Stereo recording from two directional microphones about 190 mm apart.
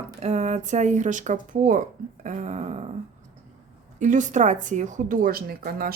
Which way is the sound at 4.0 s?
40° right (ahead or behind).